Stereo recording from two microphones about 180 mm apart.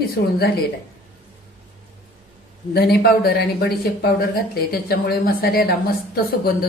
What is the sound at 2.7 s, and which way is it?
A woman's voice, 60° left (ahead or behind).